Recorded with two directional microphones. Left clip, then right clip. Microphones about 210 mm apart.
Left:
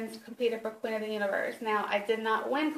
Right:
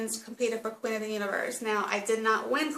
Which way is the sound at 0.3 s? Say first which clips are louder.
Even; 15° right (ahead or behind).